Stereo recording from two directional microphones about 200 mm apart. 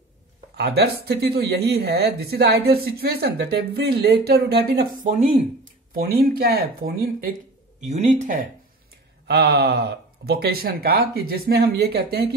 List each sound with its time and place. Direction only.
0.6 s speech: 55° right (ahead or behind)
5.0 s speech: 40° right (ahead or behind)
7.8 s speech: 35° right (ahead or behind)
9.3 s speech: 55° right (ahead or behind)